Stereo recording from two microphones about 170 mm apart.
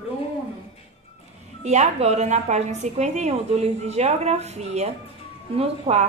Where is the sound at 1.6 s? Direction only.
40° right (ahead or behind).